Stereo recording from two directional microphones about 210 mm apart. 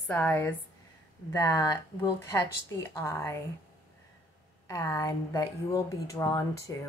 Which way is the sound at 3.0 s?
10° left (ahead or behind).